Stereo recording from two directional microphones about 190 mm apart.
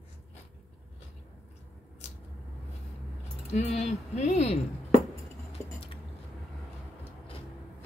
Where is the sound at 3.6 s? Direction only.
35° left (ahead or behind).